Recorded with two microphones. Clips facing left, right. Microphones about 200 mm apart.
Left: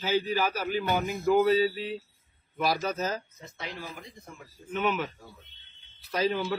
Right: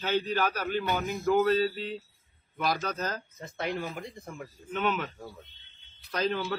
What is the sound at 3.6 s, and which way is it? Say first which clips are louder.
Speech: right 7 dB; 60° right (ahead or behind).